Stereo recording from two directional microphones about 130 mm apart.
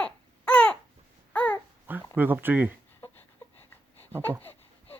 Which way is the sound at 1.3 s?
10° left (ahead or behind).